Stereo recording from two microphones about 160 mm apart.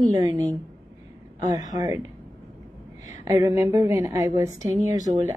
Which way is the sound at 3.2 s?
15° right (ahead or behind).